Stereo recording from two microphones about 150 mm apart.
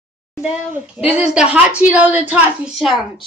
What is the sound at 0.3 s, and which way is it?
Speech, 5° right (ahead or behind).